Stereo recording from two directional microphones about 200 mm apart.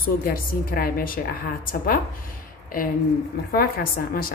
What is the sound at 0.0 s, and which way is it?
A woman's voice, 45° left (ahead or behind).